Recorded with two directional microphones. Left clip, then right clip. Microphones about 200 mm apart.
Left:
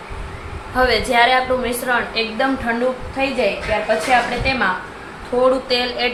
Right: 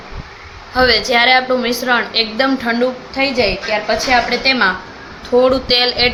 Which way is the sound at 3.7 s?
55° right (ahead or behind).